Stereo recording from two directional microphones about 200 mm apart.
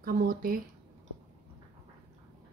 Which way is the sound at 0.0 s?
45° right (ahead or behind).